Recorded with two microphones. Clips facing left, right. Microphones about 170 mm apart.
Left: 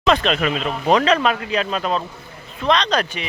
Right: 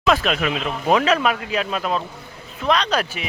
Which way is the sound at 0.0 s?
5° right (ahead or behind).